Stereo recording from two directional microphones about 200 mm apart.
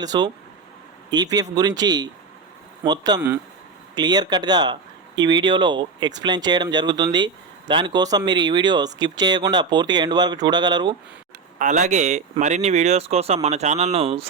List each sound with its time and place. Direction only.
0.0 s speech: 20° right (ahead or behind)
3.2 s speech: 10° right (ahead or behind)
3.9 s speech: 20° right (ahead or behind)
11.6 s speech: 35° right (ahead or behind)